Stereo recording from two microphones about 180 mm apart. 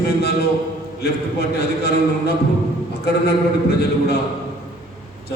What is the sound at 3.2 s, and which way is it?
Speech, 60° left (ahead or behind).